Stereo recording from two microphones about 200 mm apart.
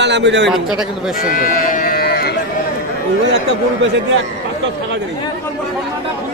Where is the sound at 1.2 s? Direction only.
45° left (ahead or behind).